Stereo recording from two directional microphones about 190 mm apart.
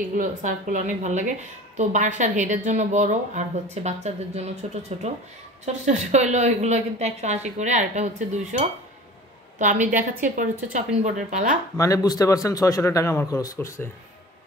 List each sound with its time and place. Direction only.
0.1 s a woman's voice: 40° right (ahead or behind)
11.7 s a man's voice: 15° left (ahead or behind)